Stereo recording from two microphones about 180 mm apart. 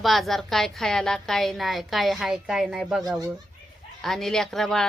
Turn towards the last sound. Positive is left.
turn(degrees=5)  # may be behind; listen again after turning